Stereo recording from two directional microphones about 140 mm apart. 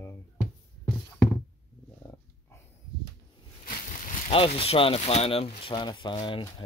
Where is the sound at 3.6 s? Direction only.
70° left (ahead or behind).